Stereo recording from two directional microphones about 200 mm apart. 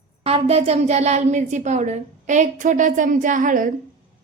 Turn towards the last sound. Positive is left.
turn(degrees=-40)  # may be behind; listen again after turning